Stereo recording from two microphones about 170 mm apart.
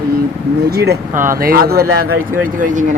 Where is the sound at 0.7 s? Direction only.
70° right (ahead or behind).